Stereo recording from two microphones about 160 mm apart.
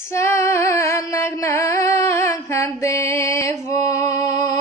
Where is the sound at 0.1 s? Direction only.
15° left (ahead or behind).